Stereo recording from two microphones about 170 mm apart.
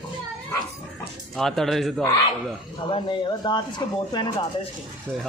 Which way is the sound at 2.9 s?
30° left (ahead or behind).